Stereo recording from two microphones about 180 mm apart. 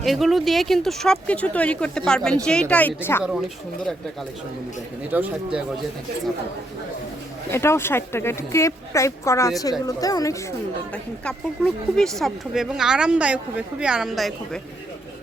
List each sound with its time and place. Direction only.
0.0 s speech: centre (ahead or behind)
5.1 s speech: 10° right (ahead or behind)
7.5 s a woman's voice: 15° left (ahead or behind)
10.9 s speech: 5° left (ahead or behind)